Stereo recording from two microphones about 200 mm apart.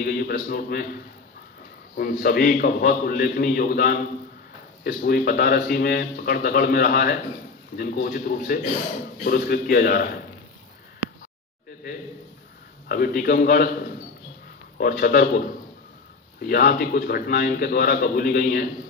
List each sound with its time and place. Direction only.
0.0 s a man's voice: 50° left (ahead or behind)
2.0 s a man's voice: 45° left (ahead or behind)
12.8 s a man's voice: 50° left (ahead or behind)
14.8 s a man's voice: 50° left (ahead or behind)